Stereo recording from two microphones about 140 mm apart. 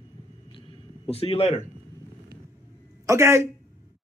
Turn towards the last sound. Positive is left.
turn(degrees=-20)  # may be behind; listen again after turning